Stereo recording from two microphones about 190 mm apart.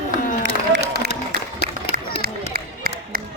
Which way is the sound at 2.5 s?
50° right (ahead or behind).